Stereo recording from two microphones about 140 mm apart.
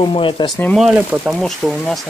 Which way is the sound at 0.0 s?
40° left (ahead or behind).